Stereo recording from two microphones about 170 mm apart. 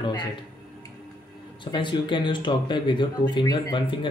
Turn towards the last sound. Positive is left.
turn(degrees=30)  # may be behind; listen again after turning